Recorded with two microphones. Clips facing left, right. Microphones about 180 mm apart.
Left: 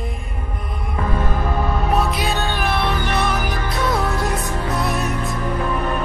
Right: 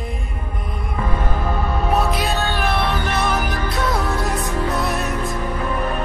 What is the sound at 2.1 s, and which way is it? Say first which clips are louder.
Music: right 1 dB; centre (ahead or behind).